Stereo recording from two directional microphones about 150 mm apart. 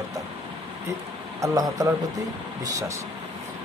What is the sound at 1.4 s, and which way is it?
Speech, 20° right (ahead or behind).